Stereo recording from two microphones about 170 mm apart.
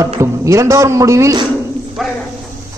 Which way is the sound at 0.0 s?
20° right (ahead or behind).